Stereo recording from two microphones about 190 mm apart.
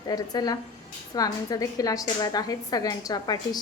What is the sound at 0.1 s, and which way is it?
A woman's voice, 20° left (ahead or behind).